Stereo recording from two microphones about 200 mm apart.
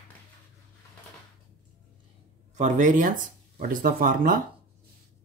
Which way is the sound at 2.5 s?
40° right (ahead or behind).